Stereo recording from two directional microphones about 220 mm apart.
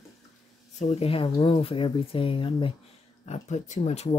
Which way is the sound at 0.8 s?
30° left (ahead or behind).